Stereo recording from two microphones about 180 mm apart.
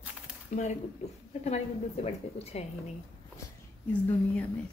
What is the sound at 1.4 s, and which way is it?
A woman's voice, 35° left (ahead or behind).